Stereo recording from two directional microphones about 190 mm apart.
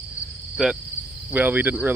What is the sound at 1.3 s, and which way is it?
Speech, 10° right (ahead or behind).